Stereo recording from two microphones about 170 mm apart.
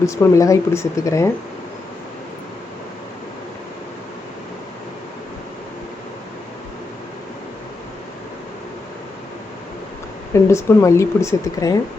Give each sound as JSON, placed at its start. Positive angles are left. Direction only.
{"t": 0.0, "sound": "speech", "side_deg": 15}
{"t": 10.3, "sound": "speech", "side_deg": 15}